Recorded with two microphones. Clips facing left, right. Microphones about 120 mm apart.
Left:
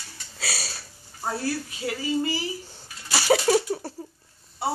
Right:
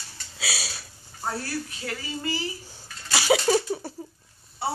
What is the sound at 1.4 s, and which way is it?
Speech, 20° left (ahead or behind).